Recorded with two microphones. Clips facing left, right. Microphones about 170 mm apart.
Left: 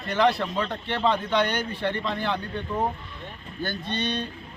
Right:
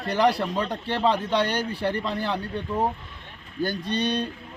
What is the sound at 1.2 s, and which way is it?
Speech, 35° right (ahead or behind).